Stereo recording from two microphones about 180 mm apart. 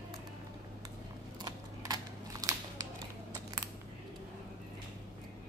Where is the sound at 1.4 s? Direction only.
20° right (ahead or behind).